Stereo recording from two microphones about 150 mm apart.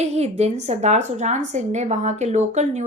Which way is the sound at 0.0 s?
45° right (ahead or behind).